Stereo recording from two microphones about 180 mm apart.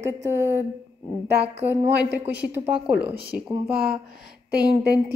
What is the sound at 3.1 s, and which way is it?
Speech, 60° right (ahead or behind).